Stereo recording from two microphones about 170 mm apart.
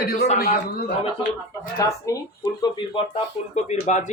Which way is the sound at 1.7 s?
20° left (ahead or behind).